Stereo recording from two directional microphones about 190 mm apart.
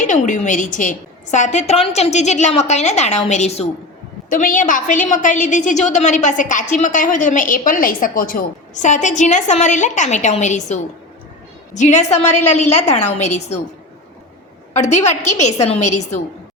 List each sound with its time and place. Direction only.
0.0 s a woman's voice: 40° left (ahead or behind)
14.7 s a woman's voice: 35° left (ahead or behind)